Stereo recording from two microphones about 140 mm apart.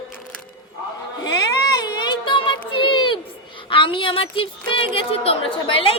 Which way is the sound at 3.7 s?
35° left (ahead or behind).